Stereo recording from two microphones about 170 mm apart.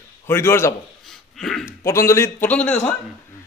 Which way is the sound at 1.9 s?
15° left (ahead or behind).